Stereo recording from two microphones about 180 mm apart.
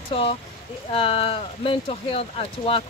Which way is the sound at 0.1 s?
30° left (ahead or behind).